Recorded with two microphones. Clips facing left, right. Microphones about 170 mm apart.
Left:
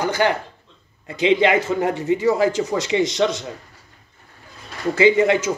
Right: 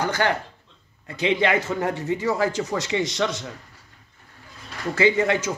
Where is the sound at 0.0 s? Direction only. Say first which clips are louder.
Left 3 dB; 15° left (ahead or behind).